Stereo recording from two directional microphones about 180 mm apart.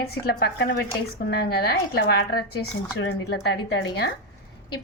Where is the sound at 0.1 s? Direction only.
60° left (ahead or behind).